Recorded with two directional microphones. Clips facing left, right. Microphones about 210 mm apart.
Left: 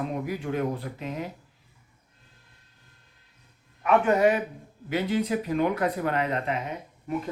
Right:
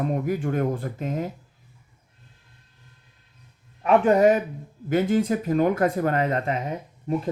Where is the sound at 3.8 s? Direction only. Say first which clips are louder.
Right 4 dB; 35° right (ahead or behind).